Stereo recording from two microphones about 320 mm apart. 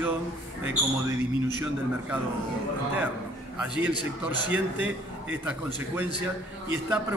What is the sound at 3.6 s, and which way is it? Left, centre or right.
A man's voice, centre.